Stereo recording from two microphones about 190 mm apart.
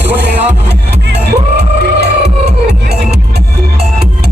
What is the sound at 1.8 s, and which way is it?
Music, 60° right (ahead or behind).